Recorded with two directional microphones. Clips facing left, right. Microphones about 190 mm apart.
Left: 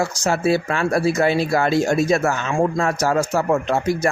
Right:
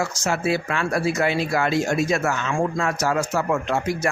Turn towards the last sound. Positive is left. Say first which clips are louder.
# left 4 dB
turn(degrees=35)  # may be behind; listen again after turning